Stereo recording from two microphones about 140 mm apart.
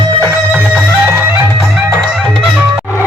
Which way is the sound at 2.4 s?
10° right (ahead or behind).